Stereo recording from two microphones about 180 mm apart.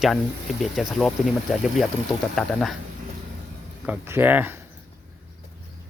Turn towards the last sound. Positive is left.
turn(degrees=-10)  # may be behind; listen again after turning